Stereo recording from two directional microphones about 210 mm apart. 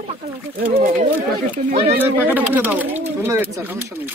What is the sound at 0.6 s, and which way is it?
Speech, 40° right (ahead or behind).